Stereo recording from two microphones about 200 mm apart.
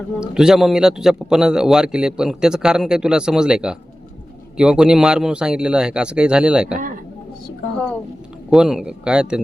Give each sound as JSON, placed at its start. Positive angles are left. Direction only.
{"t": 0.2, "sound": "a man's voice", "side_deg": -5}
{"t": 6.7, "sound": "speech", "side_deg": -40}
{"t": 8.4, "sound": "a man's voice", "side_deg": -5}